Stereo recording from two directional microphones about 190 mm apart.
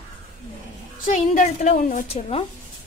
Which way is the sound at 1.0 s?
40° left (ahead or behind).